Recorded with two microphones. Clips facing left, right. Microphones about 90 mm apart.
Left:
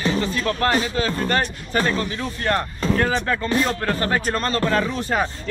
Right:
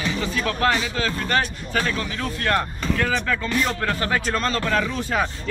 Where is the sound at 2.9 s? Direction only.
35° left (ahead or behind).